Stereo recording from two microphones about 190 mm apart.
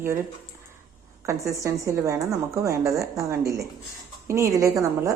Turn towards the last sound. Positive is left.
turn(degrees=-15)  # may be behind; listen again after turning